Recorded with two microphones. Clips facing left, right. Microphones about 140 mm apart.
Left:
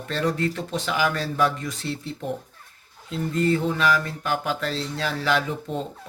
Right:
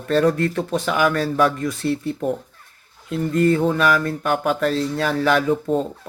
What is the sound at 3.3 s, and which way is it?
Speech, 50° right (ahead or behind).